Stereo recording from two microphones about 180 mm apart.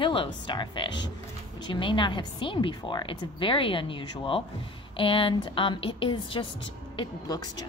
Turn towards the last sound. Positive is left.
turn(degrees=20)  # may be behind; listen again after turning